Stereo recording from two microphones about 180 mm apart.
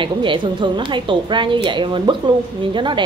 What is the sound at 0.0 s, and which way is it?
A woman's voice, 25° right (ahead or behind).